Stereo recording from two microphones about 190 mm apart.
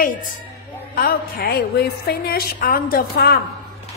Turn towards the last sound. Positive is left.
turn(degrees=50)  # may be behind; listen again after turning